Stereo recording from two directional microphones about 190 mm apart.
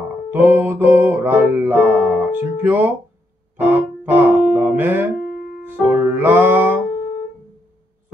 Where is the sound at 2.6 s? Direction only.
10° right (ahead or behind).